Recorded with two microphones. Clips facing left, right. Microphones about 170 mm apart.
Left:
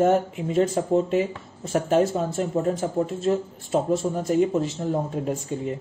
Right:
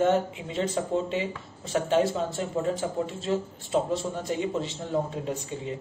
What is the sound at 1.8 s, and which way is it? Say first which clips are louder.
Speech: left 3 dB; 45° left (ahead or behind).